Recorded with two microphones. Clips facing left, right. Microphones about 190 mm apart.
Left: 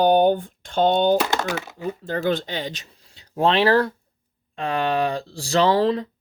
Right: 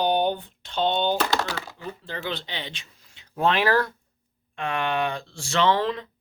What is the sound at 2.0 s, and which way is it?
Speech, 45° left (ahead or behind).